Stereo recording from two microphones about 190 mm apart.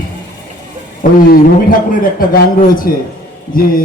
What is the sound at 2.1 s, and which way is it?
A man's voice, 50° left (ahead or behind).